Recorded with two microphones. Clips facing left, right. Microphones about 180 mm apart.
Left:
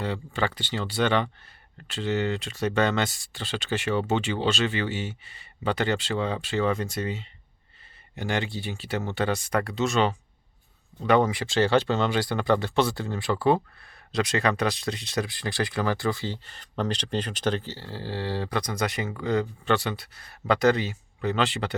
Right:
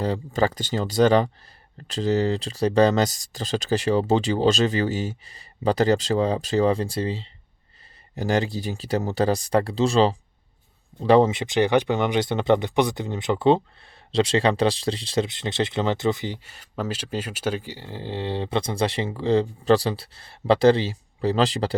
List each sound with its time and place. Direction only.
0.3 s speech: 40° right (ahead or behind)